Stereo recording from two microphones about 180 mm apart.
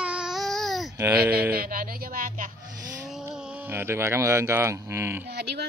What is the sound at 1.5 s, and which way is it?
Music, 55° right (ahead or behind).